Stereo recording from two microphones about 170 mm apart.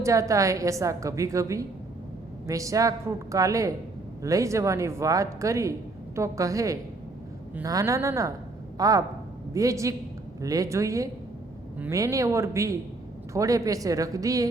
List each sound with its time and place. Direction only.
0.0 s a woman's voice: 20° right (ahead or behind)